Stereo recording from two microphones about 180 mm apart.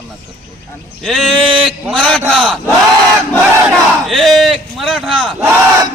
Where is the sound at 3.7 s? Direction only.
Centre (ahead or behind).